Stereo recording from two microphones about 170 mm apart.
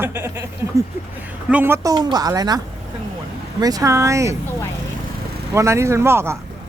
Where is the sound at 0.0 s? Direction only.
15° right (ahead or behind).